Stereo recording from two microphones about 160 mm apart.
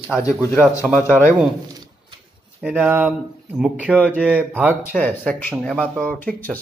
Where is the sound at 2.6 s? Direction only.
5° right (ahead or behind).